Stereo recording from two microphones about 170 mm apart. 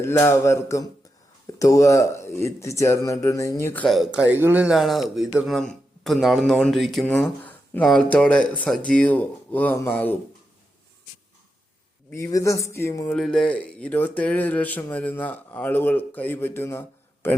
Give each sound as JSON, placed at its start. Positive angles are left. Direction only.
{"t": 0.0, "sound": "speech", "side_deg": 15}
{"t": 3.8, "sound": "speech", "side_deg": 0}
{"t": 12.1, "sound": "speech", "side_deg": 15}
{"t": 13.1, "sound": "speech", "side_deg": 5}